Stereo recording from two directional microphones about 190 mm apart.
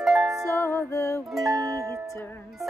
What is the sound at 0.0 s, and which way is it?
Music, centre (ahead or behind).